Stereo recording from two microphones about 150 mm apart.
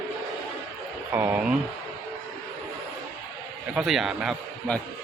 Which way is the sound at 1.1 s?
15° right (ahead or behind).